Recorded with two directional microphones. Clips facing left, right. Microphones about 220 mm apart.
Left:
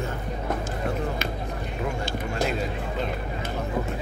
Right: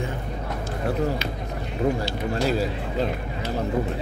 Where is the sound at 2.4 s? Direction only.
35° right (ahead or behind).